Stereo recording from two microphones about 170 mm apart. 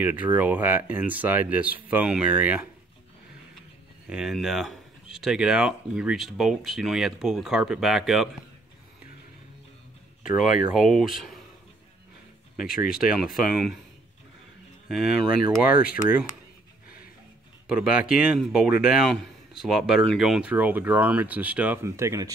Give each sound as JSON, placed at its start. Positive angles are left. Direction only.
{"t": 0.0, "sound": "speech", "side_deg": -10}
{"t": 4.1, "sound": "speech", "side_deg": 0}
{"t": 10.7, "sound": "speech", "side_deg": 0}
{"t": 12.5, "sound": "speech", "side_deg": 55}
{"t": 12.9, "sound": "speech", "side_deg": -5}
{"t": 14.9, "sound": "speech", "side_deg": 0}
{"t": 15.7, "sound": "speech", "side_deg": 60}
{"t": 17.6, "sound": "speech", "side_deg": -5}